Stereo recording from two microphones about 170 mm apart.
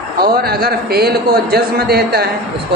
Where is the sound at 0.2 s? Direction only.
65° right (ahead or behind).